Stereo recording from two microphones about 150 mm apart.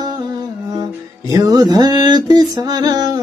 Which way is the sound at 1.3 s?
25° right (ahead or behind).